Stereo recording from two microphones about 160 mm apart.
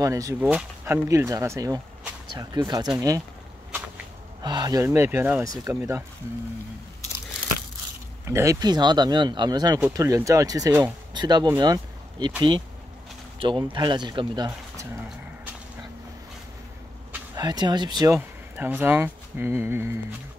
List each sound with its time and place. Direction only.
0.0 s speech: 20° right (ahead or behind)
4.4 s speech: 25° right (ahead or behind)
8.3 s speech: 20° right (ahead or behind)
13.4 s speech: 30° right (ahead or behind)
17.4 s speech: 25° right (ahead or behind)